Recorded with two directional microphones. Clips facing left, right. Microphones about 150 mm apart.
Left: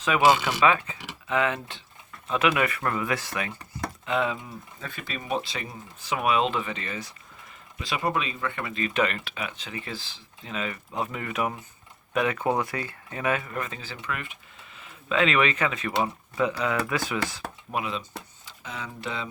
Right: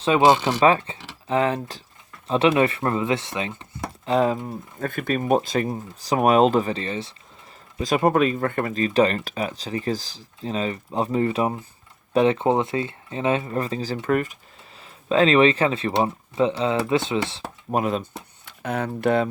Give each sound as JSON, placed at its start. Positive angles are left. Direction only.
{"t": 0.0, "sound": "speech", "side_deg": -30}
{"t": 4.0, "sound": "speech", "side_deg": -35}
{"t": 7.8, "sound": "speech", "side_deg": -45}
{"t": 17.7, "sound": "speech", "side_deg": -45}
{"t": 18.4, "sound": "speech", "side_deg": -60}